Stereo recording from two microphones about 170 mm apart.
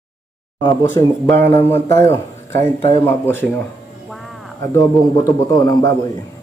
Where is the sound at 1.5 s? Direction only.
15° left (ahead or behind).